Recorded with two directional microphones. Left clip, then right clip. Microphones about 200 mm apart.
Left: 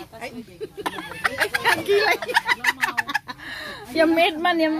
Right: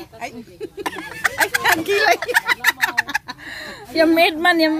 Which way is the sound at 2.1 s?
15° right (ahead or behind).